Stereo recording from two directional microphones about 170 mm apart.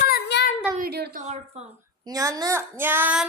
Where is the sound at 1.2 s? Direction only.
40° right (ahead or behind).